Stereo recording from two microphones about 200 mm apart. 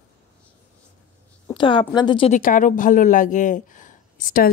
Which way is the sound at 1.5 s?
25° left (ahead or behind).